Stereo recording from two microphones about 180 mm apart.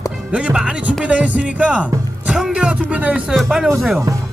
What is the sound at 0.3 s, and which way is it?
Speech, 5° right (ahead or behind).